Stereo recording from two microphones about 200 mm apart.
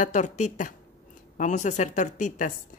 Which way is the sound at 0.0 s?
40° left (ahead or behind).